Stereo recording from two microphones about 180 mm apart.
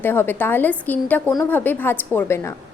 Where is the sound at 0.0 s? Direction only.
10° left (ahead or behind).